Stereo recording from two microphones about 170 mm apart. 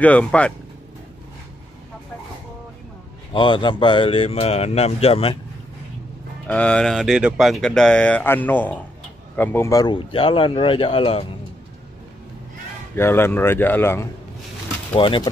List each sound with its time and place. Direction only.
0.0 s speech: 10° left (ahead or behind)
3.3 s speech: 30° left (ahead or behind)
6.4 s speech: 5° left (ahead or behind); by 11.2 s 30° left (ahead or behind)
12.9 s speech: 15° left (ahead or behind)
15.0 s speech: 30° left (ahead or behind)